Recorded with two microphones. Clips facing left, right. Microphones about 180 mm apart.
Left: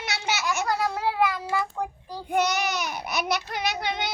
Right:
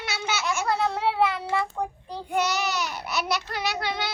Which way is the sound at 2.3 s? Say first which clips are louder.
Left 1 dB; 15° left (ahead or behind).